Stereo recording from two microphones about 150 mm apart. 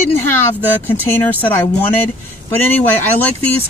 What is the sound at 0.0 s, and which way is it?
Speech, 15° left (ahead or behind).